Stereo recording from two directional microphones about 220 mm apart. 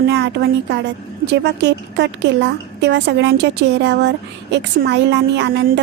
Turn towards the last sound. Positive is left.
turn(degrees=-50)  # may be behind; listen again after turning